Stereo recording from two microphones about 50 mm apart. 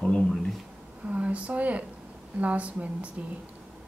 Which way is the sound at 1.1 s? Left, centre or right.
Right.